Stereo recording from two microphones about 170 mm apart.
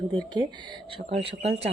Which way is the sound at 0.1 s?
25° right (ahead or behind).